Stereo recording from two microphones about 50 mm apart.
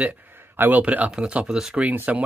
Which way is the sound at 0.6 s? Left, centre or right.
Right.